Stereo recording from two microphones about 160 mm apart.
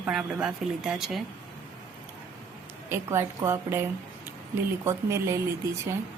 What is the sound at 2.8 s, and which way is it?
Speech, 15° right (ahead or behind).